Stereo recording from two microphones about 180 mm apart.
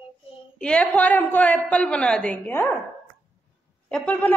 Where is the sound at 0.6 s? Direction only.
5° left (ahead or behind).